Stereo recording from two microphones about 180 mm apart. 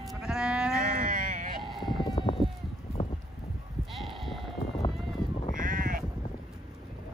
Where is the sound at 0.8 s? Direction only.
50° right (ahead or behind).